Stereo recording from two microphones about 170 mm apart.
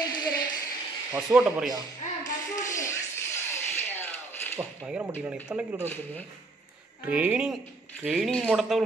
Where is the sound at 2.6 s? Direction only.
20° left (ahead or behind).